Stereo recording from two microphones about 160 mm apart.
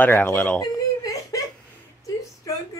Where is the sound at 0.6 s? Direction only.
20° left (ahead or behind).